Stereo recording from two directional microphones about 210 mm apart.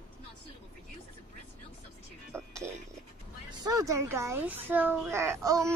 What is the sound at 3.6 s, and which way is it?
A woman's voice, 15° right (ahead or behind).